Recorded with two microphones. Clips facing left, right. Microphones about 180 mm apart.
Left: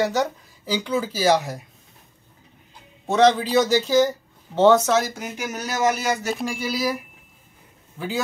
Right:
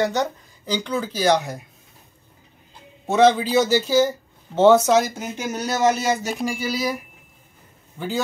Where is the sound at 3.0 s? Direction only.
5° right (ahead or behind).